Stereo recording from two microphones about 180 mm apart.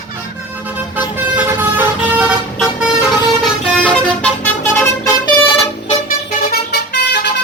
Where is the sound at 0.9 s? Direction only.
10° right (ahead or behind).